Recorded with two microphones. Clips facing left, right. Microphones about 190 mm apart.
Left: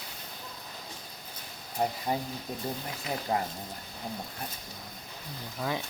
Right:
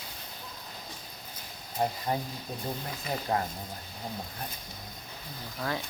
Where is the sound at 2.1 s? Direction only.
10° left (ahead or behind).